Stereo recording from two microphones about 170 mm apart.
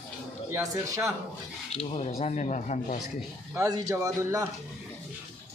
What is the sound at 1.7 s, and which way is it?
Speech, 35° left (ahead or behind).